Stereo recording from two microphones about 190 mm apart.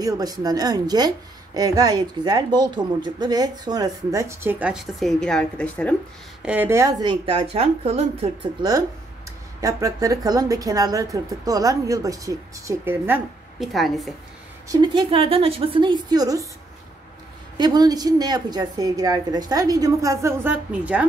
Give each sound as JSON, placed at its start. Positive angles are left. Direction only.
{"t": 0.0, "sound": "a woman's voice", "side_deg": -20}
{"t": 6.4, "sound": "a woman's voice", "side_deg": -10}
{"t": 9.6, "sound": "a woman's voice", "side_deg": -20}
{"t": 14.7, "sound": "a woman's voice", "side_deg": -25}
{"t": 17.6, "sound": "a woman's voice", "side_deg": -20}